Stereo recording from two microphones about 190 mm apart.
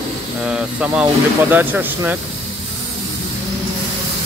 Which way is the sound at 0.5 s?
5° right (ahead or behind).